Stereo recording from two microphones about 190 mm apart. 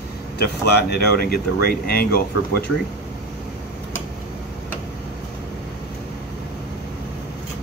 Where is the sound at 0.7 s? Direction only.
55° left (ahead or behind).